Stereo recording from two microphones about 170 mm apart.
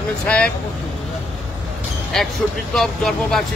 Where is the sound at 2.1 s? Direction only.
Centre (ahead or behind).